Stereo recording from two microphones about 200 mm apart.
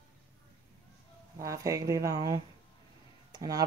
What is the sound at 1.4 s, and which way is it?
Speech, 15° right (ahead or behind).